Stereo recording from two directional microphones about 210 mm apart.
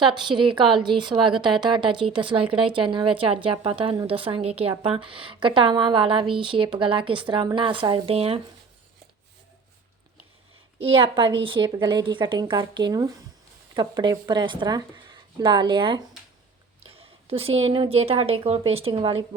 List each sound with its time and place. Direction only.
0.0 s a woman's voice: 20° right (ahead or behind)
10.8 s a woman's voice: 25° right (ahead or behind)